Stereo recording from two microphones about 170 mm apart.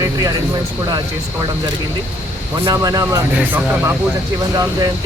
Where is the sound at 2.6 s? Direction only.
20° right (ahead or behind).